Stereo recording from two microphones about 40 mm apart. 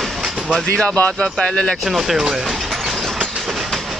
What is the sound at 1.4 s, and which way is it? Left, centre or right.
Speech, left.